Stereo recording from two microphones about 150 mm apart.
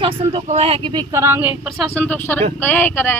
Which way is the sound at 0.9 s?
20° right (ahead or behind).